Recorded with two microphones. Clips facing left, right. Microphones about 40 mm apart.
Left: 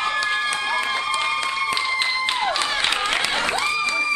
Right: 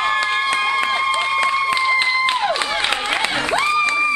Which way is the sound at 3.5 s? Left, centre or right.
Centre.